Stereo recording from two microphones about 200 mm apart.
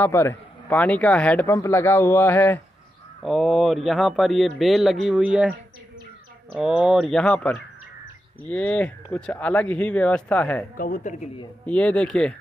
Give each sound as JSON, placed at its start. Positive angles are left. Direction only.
{"t": 0.0, "sound": "a man's voice", "side_deg": 10}
{"t": 6.5, "sound": "a man's voice", "side_deg": -5}
{"t": 10.8, "sound": "speech", "side_deg": 40}
{"t": 11.6, "sound": "a man's voice", "side_deg": 5}